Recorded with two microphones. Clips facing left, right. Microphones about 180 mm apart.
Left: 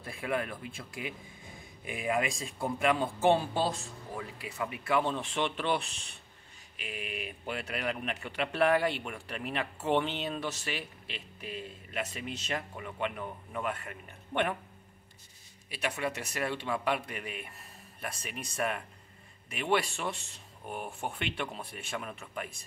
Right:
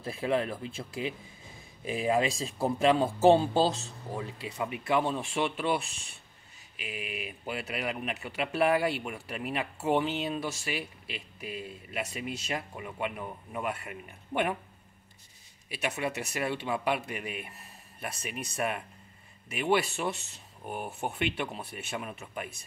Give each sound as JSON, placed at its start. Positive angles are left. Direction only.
{"t": 0.0, "sound": "speech", "side_deg": -25}
{"t": 5.0, "sound": "speech", "side_deg": -10}
{"t": 16.0, "sound": "speech", "side_deg": -10}